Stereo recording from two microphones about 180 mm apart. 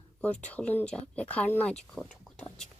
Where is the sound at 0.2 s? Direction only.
5° left (ahead or behind).